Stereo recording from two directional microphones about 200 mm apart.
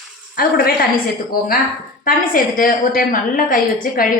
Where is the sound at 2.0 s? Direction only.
45° left (ahead or behind).